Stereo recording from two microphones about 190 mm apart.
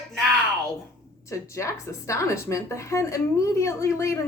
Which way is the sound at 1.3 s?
15° left (ahead or behind).